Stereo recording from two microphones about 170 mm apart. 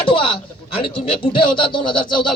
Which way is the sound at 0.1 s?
30° left (ahead or behind).